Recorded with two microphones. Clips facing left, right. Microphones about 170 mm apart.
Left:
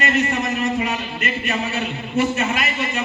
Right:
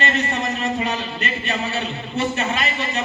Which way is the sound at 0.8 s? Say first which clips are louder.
Left 1 dB; 35° right (ahead or behind).